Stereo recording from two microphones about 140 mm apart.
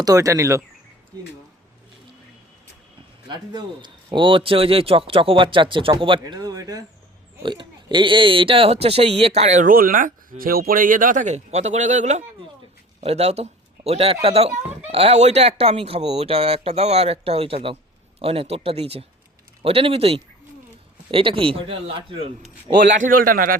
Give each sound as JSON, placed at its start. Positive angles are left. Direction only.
{"t": 0.0, "sound": "speech", "side_deg": -25}
{"t": 3.2, "sound": "a man's voice", "side_deg": -35}
{"t": 6.2, "sound": "a sound", "side_deg": -25}
{"t": 7.4, "sound": "a man's voice", "side_deg": -35}
{"t": 23.0, "sound": "a man's voice", "side_deg": -80}